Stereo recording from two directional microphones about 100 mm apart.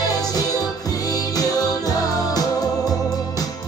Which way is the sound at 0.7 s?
40° left (ahead or behind).